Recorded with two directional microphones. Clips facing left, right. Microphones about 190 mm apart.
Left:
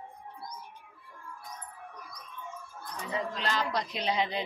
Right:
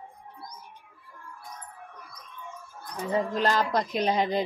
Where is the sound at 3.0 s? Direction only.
45° right (ahead or behind).